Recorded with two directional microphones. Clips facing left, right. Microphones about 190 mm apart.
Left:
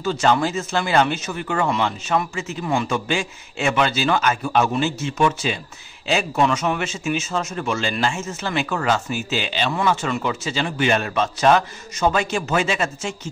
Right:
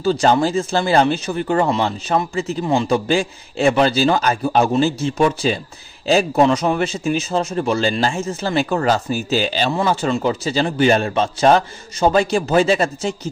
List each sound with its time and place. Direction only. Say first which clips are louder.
0.0 s a man's voice: right 4 dB; 35° right (ahead or behind)